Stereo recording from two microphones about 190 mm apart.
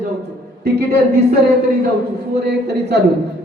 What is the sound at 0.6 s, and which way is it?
Speech, 55° right (ahead or behind).